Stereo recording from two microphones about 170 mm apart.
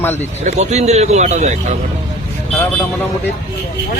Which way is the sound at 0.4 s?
40° right (ahead or behind).